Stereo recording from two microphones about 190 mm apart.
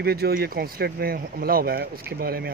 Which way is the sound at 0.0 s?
55° right (ahead or behind).